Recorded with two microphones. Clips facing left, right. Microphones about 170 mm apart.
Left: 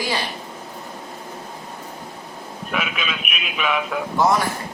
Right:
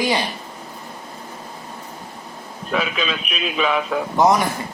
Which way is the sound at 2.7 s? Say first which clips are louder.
Right 4 dB; 30° right (ahead or behind).